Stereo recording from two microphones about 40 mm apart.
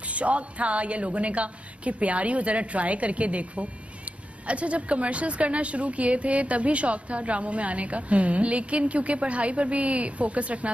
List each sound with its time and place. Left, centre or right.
0.0 s a woman's voice: right